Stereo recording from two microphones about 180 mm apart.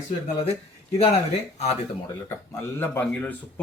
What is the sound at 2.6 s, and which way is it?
Speech, 15° left (ahead or behind).